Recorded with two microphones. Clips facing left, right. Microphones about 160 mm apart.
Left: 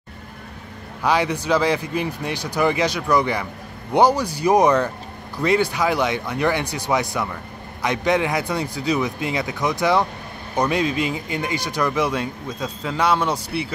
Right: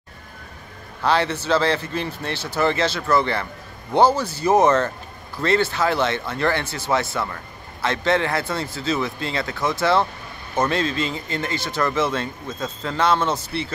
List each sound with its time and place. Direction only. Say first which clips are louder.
1.0 s a man's voice: even; 10° left (ahead or behind)